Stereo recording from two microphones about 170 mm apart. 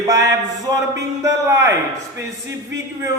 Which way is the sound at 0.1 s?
20° right (ahead or behind).